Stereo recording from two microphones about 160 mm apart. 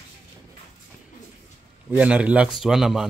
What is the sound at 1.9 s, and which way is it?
A man's voice, 10° right (ahead or behind).